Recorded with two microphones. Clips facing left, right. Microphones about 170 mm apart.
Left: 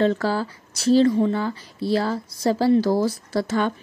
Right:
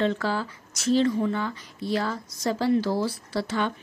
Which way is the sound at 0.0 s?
40° left (ahead or behind).